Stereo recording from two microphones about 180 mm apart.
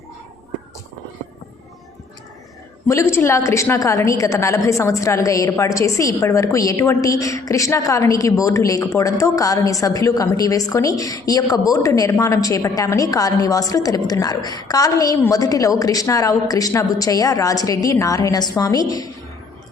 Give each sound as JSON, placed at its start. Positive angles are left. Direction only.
{"t": 2.8, "sound": "a woman's voice", "side_deg": 15}